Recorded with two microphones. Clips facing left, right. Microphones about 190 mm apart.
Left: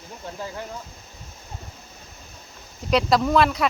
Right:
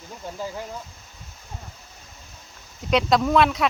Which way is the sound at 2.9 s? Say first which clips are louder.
Even; centre (ahead or behind).